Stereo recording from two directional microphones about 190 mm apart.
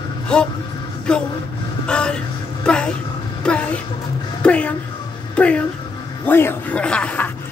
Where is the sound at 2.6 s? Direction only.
5° left (ahead or behind).